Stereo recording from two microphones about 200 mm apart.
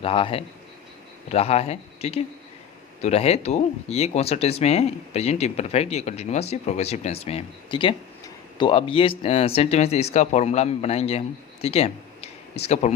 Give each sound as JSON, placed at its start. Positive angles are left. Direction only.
{"t": 0.0, "sound": "a man's voice", "side_deg": 25}